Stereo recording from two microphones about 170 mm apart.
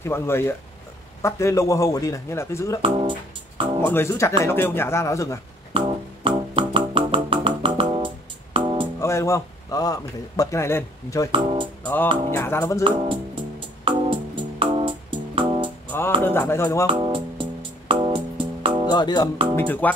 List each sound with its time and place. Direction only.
0.0 s a man's voice: 15° left (ahead or behind)
2.8 s music: 30° right (ahead or behind)
3.8 s a man's voice: 15° left (ahead or behind)
5.7 s music: 30° right (ahead or behind)
9.0 s a man's voice: 15° left (ahead or behind)
11.3 s speech: 30° right (ahead or behind)
11.8 s music: 10° left (ahead or behind)
12.3 s a man's voice: 15° left (ahead or behind)
12.8 s speech: 30° right (ahead or behind)
13.8 s music: 30° right (ahead or behind)
16.2 s a man's voice: 10° left (ahead or behind)
17.0 s music: 30° right (ahead or behind)
18.9 s speech: 25° left (ahead or behind)
19.5 s a man's voice: 10° left (ahead or behind)